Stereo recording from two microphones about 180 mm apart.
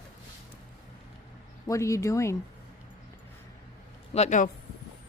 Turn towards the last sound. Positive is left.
turn(degrees=40)  # may be behind; listen again after turning